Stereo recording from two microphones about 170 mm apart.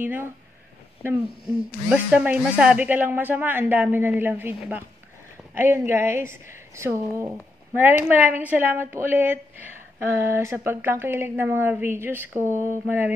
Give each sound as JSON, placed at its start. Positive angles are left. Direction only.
{"t": 0.0, "sound": "a woman's voice", "side_deg": -10}
{"t": 1.9, "sound": "a woman's voice", "side_deg": -10}